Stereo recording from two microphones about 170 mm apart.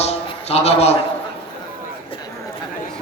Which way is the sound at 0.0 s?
35° left (ahead or behind).